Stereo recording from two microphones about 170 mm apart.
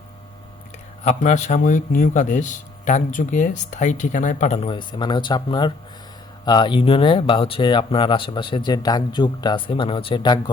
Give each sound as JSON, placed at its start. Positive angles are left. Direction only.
{"t": 1.0, "sound": "a man's voice", "side_deg": 40}